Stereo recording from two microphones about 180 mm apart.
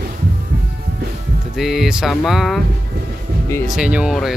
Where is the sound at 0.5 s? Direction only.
60° right (ahead or behind).